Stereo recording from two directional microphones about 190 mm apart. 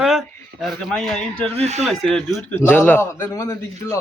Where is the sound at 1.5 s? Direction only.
35° right (ahead or behind).